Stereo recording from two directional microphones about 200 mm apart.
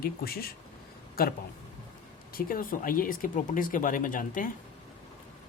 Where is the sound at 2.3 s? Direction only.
45° left (ahead or behind).